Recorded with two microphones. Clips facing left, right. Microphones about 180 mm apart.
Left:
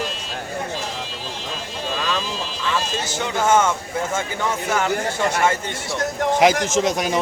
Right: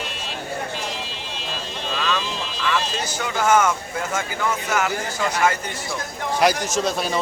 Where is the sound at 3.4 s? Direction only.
25° left (ahead or behind).